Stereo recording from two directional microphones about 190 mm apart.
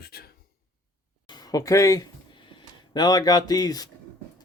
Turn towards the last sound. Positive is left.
turn(degrees=20)  # may be behind; listen again after turning